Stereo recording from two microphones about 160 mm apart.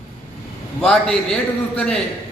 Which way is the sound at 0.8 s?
5° left (ahead or behind).